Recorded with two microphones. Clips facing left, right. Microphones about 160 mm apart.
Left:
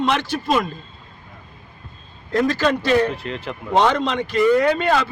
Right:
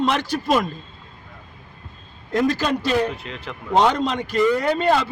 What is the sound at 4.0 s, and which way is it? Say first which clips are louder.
Speech: left 1 dB; 40° right (ahead or behind).